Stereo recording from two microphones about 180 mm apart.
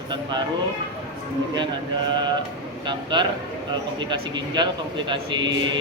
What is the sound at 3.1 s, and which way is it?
A man's voice, 25° right (ahead or behind).